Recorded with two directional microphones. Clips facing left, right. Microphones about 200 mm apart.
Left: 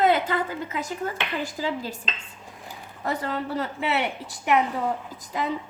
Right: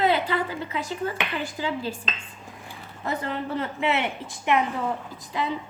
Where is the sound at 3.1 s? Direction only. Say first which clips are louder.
Left 1 dB; 35° left (ahead or behind).